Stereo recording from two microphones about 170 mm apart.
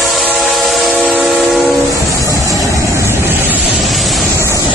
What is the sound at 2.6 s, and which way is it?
Vehicle, 15° right (ahead or behind).